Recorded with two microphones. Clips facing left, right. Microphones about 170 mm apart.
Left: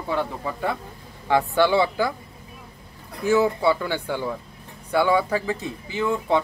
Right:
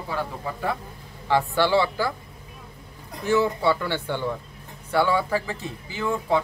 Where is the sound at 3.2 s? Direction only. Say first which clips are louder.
Left 2 dB; 15° left (ahead or behind).